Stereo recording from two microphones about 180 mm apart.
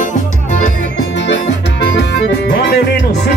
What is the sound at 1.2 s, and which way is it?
Music, 75° left (ahead or behind).